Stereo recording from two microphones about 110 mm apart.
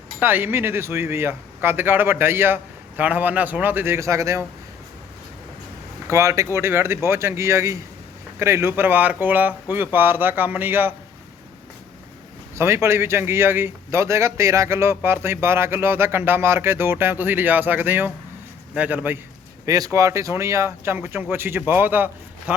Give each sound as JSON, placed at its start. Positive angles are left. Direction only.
{"t": 0.2, "sound": "speech", "side_deg": -20}
{"t": 6.1, "sound": "speech", "side_deg": -30}
{"t": 12.5, "sound": "speech", "side_deg": -25}
{"t": 19.6, "sound": "speech", "side_deg": -35}